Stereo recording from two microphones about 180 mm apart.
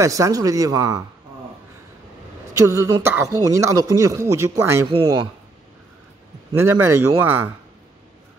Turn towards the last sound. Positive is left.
turn(degrees=-10)  # may be behind; listen again after turning